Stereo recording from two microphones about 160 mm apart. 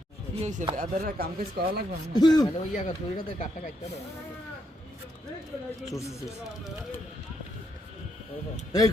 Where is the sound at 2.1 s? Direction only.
25° left (ahead or behind).